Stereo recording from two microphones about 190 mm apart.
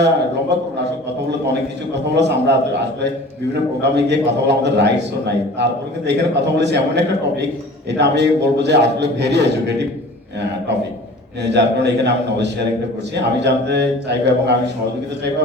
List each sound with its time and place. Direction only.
0.5 s a man's voice: 65° right (ahead or behind)
2.0 s a man's voice: 65° right (ahead or behind)
11.4 s a man's voice: 65° right (ahead or behind)